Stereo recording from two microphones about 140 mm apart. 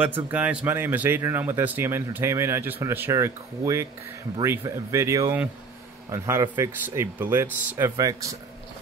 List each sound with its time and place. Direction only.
0.0 s speech: 10° right (ahead or behind)